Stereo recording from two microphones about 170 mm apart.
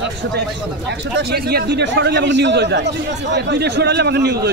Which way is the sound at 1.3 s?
70° right (ahead or behind).